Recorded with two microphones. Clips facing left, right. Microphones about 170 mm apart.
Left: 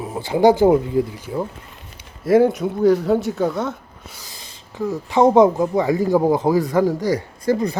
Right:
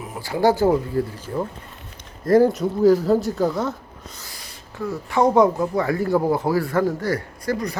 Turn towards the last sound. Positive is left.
turn(degrees=25)  # may be behind; listen again after turning